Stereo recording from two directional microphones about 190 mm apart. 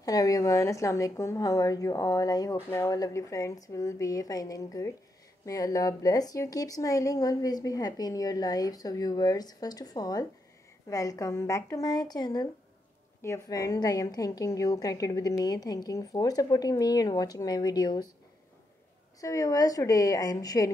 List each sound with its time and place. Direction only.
0.0 s speech: 20° left (ahead or behind)
19.2 s speech: 20° left (ahead or behind)